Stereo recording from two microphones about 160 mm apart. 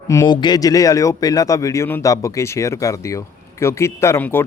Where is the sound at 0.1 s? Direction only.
25° left (ahead or behind).